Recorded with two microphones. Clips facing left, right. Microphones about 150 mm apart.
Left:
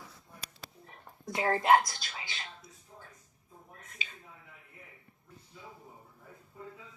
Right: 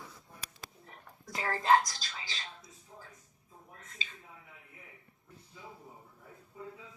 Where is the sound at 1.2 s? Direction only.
30° left (ahead or behind).